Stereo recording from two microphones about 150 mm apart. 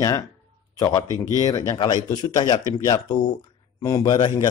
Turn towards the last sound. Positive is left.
turn(degrees=30)  # may be behind; listen again after turning